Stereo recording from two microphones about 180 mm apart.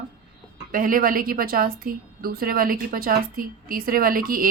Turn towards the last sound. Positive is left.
turn(degrees=-50)  # may be behind; listen again after turning